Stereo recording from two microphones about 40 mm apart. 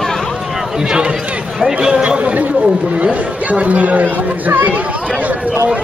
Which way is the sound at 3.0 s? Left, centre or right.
Right.